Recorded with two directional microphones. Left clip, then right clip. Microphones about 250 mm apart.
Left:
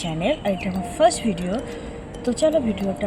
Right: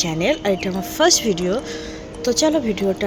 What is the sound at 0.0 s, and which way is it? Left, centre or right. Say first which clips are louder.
Speech: right 4 dB; right.